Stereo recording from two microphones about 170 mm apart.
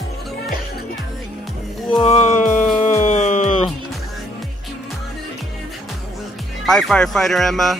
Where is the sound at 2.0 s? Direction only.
40° left (ahead or behind).